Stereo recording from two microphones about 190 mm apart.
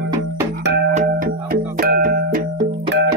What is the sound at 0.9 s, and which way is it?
Music, 45° right (ahead or behind).